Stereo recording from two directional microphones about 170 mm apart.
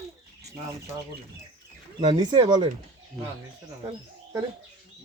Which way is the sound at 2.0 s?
30° right (ahead or behind).